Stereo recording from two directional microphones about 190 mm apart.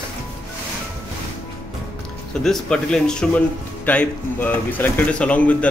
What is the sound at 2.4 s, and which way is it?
Speech, 5° left (ahead or behind).